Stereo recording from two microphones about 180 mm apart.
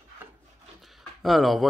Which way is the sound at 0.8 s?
Centre (ahead or behind).